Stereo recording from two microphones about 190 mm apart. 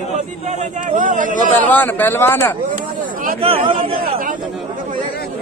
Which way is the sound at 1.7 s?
10° left (ahead or behind).